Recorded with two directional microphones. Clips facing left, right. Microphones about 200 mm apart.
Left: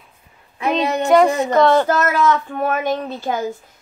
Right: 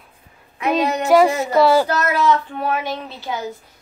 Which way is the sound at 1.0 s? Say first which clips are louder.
Left 1 dB; 5° right (ahead or behind).